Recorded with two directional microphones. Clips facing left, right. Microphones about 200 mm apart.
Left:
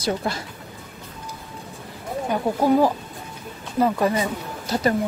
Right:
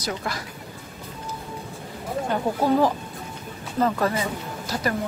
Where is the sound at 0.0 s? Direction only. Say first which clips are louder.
Left 5 dB; 25° left (ahead or behind).